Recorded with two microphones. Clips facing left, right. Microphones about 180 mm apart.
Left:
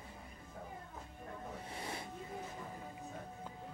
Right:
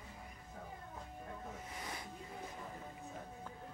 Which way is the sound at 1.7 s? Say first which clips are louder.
Left 3 dB; 30° left (ahead or behind).